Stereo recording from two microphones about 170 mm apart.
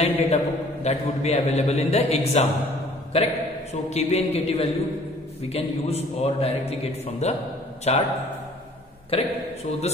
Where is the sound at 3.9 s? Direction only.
40° left (ahead or behind).